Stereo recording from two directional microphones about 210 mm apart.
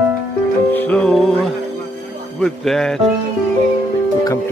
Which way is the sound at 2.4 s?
Centre (ahead or behind).